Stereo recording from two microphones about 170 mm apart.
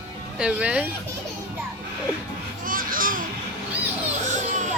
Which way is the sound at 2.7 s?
55° right (ahead or behind).